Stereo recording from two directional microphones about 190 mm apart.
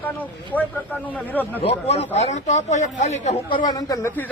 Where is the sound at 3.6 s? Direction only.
20° left (ahead or behind).